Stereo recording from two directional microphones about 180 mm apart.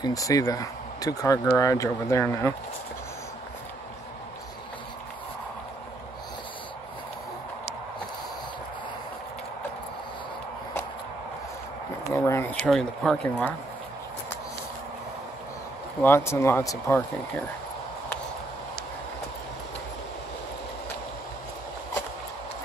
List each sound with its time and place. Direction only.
0.0 s speech: 20° left (ahead or behind)
12.1 s speech: 15° left (ahead or behind)
16.0 s speech: 15° left (ahead or behind)